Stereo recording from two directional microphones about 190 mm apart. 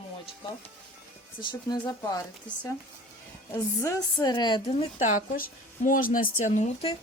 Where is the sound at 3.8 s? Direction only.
20° left (ahead or behind); by 6.9 s 35° left (ahead or behind).